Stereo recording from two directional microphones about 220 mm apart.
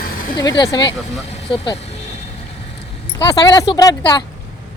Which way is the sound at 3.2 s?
15° left (ahead or behind).